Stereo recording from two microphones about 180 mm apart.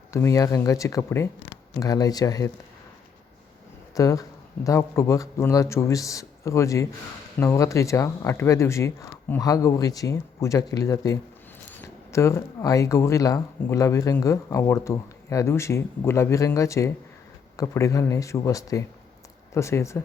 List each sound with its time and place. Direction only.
0.1 s speech: 15° left (ahead or behind)
3.9 s speech: 20° left (ahead or behind)